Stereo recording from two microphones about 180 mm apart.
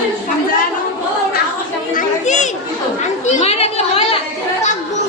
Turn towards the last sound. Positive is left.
turn(degrees=35)  # may be behind; listen again after turning